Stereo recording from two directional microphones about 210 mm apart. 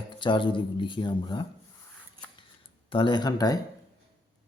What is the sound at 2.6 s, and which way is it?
Speech, 25° left (ahead or behind).